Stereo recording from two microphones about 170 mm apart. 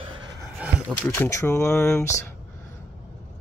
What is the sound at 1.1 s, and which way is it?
Speech, 15° left (ahead or behind).